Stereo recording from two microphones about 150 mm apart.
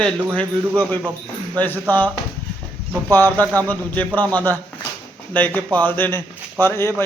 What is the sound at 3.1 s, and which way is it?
Speech, 10° left (ahead or behind).